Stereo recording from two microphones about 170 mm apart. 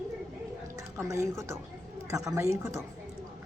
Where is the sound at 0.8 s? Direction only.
20° right (ahead or behind).